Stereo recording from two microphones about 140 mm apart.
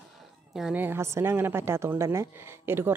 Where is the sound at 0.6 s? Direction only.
5° right (ahead or behind).